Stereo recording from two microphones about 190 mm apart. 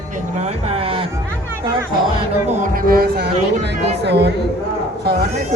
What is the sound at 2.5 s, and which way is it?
A woman's voice, 50° right (ahead or behind).